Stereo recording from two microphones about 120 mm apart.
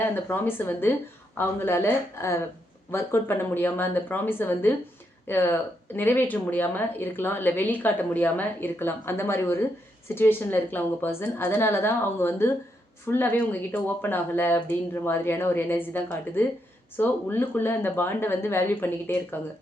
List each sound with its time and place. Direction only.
0.0 s a woman's voice: 15° left (ahead or behind)